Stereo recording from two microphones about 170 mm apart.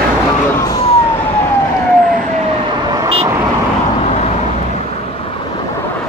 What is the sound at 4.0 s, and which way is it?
Vehicle, 40° left (ahead or behind).